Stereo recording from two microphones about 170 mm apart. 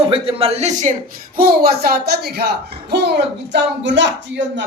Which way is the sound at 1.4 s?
65° right (ahead or behind).